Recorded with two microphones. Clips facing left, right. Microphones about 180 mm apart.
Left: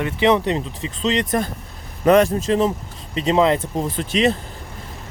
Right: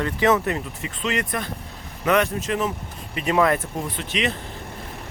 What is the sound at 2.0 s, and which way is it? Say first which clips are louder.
Speech: left 7 dB; 35° left (ahead or behind).